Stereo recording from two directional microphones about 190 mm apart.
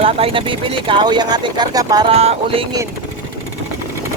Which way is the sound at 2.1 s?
30° right (ahead or behind).